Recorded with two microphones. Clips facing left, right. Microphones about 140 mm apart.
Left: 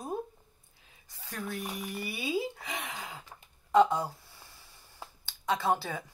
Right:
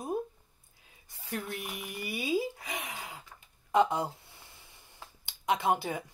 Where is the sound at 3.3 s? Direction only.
35° left (ahead or behind).